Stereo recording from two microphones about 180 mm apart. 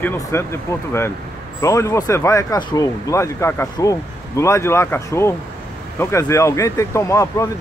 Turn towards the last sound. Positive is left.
turn(degrees=15)  # may be behind; listen again after turning